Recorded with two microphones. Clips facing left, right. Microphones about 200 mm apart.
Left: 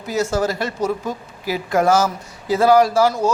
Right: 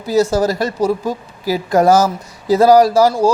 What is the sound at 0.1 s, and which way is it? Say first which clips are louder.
A man's voice: right 6 dB; 35° right (ahead or behind).